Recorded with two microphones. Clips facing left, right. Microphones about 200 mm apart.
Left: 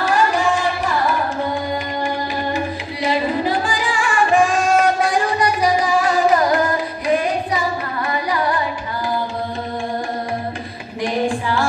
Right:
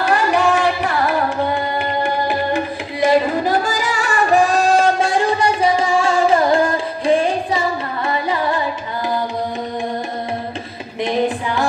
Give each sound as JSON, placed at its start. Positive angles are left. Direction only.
{"t": 0.0, "sound": "music", "side_deg": -65}
{"t": 11.0, "sound": "music", "side_deg": -20}